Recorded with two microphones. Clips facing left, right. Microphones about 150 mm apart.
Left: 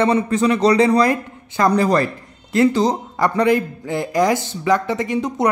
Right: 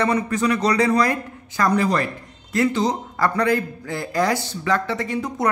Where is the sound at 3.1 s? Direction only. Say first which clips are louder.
Left 4 dB; 20° left (ahead or behind).